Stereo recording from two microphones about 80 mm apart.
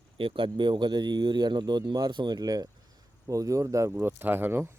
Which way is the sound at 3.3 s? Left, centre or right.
Right.